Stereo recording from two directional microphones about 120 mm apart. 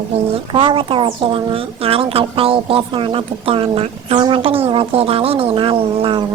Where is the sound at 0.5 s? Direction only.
45° right (ahead or behind).